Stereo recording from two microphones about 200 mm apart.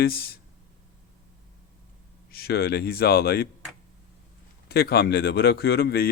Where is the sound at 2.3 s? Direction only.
50° left (ahead or behind).